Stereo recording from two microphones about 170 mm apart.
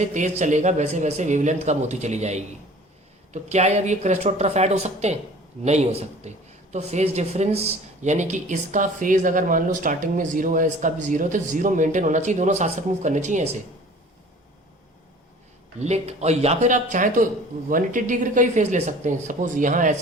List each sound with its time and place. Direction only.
0.1 s speech: 45° right (ahead or behind)
15.8 s speech: 40° right (ahead or behind)